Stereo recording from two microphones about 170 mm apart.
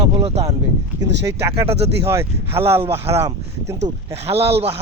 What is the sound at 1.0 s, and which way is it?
Speech, 90° right.